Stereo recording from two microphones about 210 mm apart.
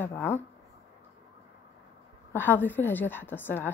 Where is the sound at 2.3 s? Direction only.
10° left (ahead or behind).